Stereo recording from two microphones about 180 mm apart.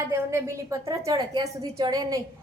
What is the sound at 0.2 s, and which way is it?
A woman's voice, 15° right (ahead or behind).